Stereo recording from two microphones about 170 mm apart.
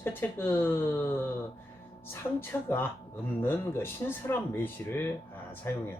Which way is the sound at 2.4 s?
10° left (ahead or behind).